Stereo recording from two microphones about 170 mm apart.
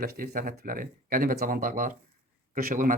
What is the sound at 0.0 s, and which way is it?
Speech, 55° right (ahead or behind).